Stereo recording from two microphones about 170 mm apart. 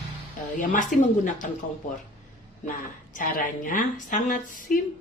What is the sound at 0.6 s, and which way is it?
Speech, 50° left (ahead or behind).